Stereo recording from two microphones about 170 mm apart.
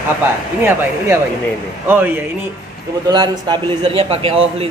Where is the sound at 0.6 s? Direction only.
10° right (ahead or behind).